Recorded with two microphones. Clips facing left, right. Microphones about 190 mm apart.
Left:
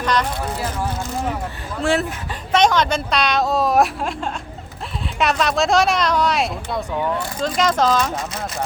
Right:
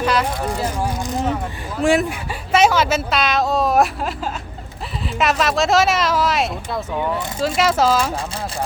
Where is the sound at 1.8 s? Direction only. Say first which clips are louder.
Right 3 dB; 15° right (ahead or behind).